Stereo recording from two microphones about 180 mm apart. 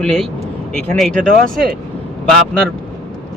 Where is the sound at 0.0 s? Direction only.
5° left (ahead or behind).